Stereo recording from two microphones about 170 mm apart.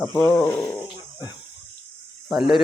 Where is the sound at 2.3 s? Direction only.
Centre (ahead or behind).